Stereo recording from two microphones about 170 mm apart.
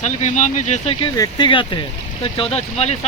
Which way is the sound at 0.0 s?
45° left (ahead or behind).